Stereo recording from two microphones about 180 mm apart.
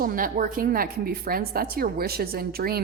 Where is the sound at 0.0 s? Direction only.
50° right (ahead or behind).